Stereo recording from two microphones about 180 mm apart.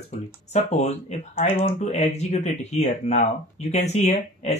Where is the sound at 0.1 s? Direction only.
40° left (ahead or behind).